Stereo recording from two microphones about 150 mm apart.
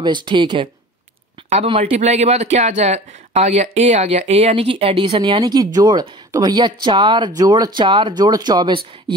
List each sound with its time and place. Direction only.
0.0 s speech: 30° right (ahead or behind)
1.7 s speech: 45° right (ahead or behind)